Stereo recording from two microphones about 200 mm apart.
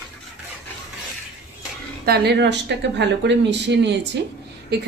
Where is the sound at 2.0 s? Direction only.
55° right (ahead or behind).